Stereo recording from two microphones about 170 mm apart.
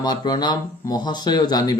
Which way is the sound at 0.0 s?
25° left (ahead or behind).